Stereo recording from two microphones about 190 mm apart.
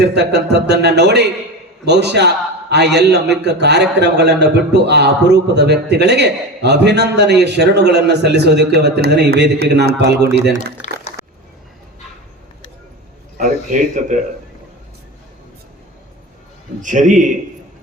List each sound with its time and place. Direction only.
0.0 s a man's voice: 60° right (ahead or behind)
13.3 s speech: 45° right (ahead or behind)
16.8 s a man's voice: 40° right (ahead or behind)